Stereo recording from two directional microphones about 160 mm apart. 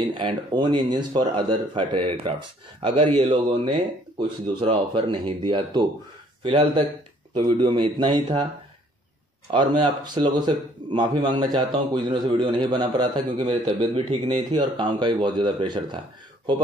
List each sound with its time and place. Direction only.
0.2 s a man's voice: 30° right (ahead or behind)
9.5 s a man's voice: 30° right (ahead or behind)